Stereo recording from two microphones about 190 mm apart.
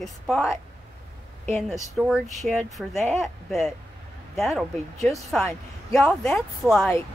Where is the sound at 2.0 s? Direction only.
Centre (ahead or behind).